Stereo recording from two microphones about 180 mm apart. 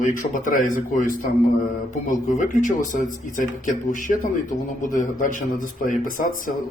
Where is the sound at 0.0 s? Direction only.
45° left (ahead or behind).